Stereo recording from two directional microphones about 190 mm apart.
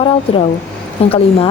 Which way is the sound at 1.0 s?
30° left (ahead or behind).